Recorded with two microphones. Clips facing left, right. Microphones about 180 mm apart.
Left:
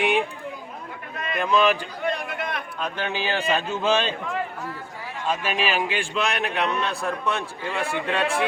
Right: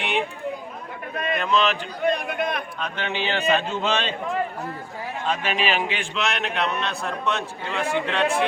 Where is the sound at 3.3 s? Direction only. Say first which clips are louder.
Right 4 dB; 10° left (ahead or behind).